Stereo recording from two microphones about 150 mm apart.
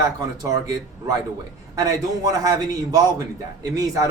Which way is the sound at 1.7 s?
25° right (ahead or behind).